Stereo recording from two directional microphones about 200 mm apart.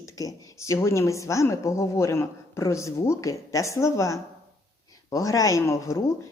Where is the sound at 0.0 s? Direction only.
15° left (ahead or behind).